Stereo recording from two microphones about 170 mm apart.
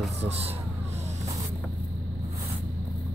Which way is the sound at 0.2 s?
35° right (ahead or behind).